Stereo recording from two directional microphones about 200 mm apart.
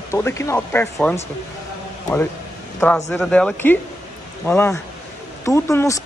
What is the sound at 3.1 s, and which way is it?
Speech, 5° left (ahead or behind).